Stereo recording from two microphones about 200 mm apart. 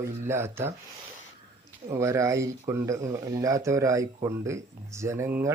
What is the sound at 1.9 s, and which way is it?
Speech, 15° right (ahead or behind).